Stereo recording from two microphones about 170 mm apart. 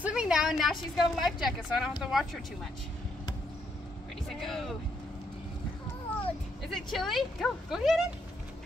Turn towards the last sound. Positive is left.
turn(degrees=0)  # may be behind; listen again after turning